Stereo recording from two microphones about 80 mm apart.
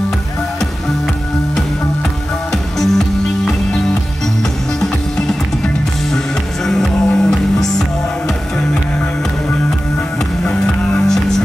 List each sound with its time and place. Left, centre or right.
2.5 s music: centre
4.7 s music: centre
10.4 s music: centre